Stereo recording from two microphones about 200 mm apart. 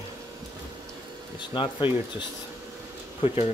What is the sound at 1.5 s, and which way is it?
Speech, 25° left (ahead or behind).